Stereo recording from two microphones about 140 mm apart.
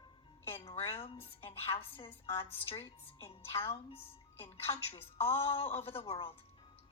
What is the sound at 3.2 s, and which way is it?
A woman's voice, 40° left (ahead or behind).